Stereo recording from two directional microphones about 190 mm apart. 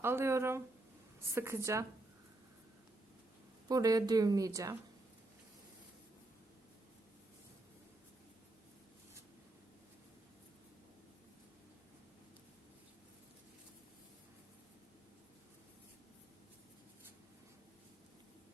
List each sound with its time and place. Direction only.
0.0 s a woman's voice: 15° right (ahead or behind)
3.7 s a woman's voice: 20° right (ahead or behind)